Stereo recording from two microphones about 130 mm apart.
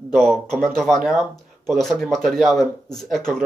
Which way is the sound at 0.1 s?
5° left (ahead or behind).